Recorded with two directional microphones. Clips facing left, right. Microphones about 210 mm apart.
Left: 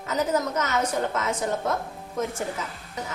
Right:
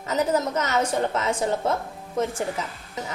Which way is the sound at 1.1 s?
30° right (ahead or behind).